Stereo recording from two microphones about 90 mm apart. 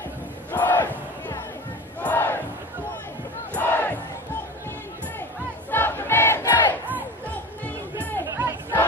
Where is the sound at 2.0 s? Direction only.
20° left (ahead or behind).